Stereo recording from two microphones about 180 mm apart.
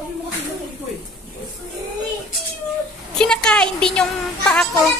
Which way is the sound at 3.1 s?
5° left (ahead or behind).